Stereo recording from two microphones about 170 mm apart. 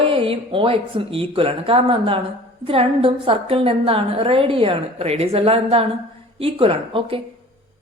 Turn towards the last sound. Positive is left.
turn(degrees=-35)  # may be behind; listen again after turning